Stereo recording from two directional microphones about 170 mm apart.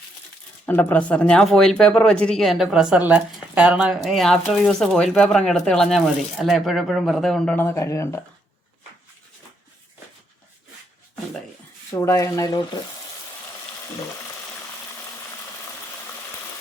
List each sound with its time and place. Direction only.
0.6 s speech: 10° left (ahead or behind)
11.9 s speech: 20° left (ahead or behind)